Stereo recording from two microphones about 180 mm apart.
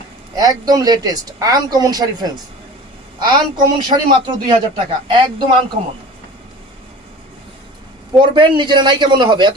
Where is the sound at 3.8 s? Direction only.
25° right (ahead or behind).